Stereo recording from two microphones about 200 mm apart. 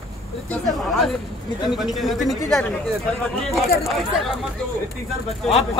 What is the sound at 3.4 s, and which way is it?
Speech, centre (ahead or behind).